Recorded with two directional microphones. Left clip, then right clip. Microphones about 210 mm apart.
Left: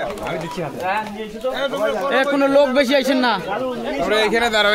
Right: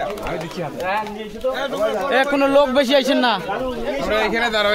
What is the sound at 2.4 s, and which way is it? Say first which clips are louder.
A man's voice: left 1 dB; 10° right (ahead or behind).